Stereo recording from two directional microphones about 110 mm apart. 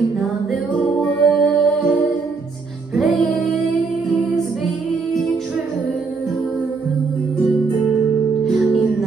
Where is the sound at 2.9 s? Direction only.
Centre (ahead or behind).